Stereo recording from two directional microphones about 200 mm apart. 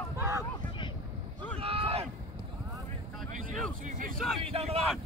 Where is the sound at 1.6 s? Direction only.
30° right (ahead or behind).